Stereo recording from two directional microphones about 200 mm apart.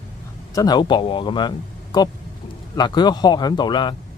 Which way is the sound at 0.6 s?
20° left (ahead or behind).